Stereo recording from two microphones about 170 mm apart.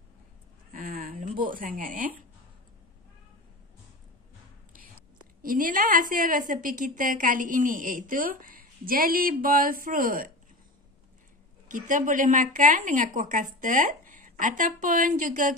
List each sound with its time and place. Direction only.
0.7 s a sound: 55° right (ahead or behind)
5.4 s a woman's voice: 55° right (ahead or behind)
11.7 s a woman's voice: 50° right (ahead or behind)